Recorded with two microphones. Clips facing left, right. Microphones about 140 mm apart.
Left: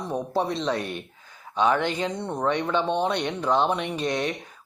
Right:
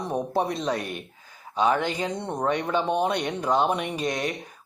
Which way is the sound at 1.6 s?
40° right (ahead or behind).